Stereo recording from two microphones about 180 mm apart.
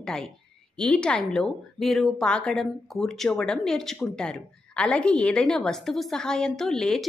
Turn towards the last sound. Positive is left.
turn(degrees=5)  # may be behind; listen again after turning